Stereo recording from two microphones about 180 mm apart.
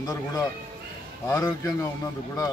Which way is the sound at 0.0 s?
20° left (ahead or behind).